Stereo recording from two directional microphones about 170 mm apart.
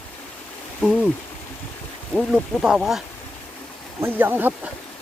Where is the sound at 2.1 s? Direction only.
5° right (ahead or behind).